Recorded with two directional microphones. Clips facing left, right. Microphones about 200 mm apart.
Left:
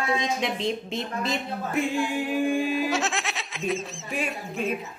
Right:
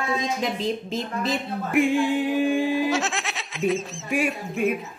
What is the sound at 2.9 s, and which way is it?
Speech, centre (ahead or behind).